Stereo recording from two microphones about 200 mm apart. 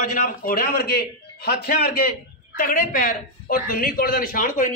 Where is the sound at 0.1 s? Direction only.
45° left (ahead or behind).